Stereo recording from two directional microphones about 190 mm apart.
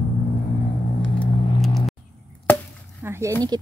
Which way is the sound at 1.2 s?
Centre (ahead or behind).